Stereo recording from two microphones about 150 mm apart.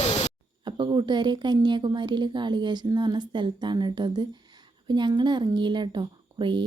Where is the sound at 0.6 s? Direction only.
30° right (ahead or behind).